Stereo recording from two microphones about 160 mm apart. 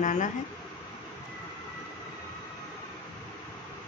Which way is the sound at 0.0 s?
50° left (ahead or behind).